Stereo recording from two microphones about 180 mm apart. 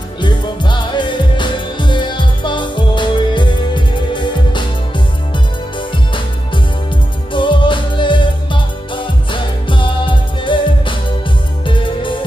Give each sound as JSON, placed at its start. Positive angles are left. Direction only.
{"t": 0.2, "sound": "music", "side_deg": 25}